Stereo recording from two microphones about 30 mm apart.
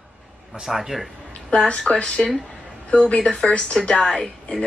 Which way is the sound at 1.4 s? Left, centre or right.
Left.